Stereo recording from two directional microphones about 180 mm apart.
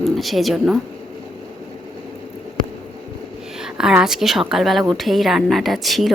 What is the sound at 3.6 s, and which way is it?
Speech, 5° right (ahead or behind).